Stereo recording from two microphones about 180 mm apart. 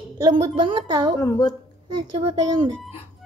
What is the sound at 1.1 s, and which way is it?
Speech, 20° left (ahead or behind).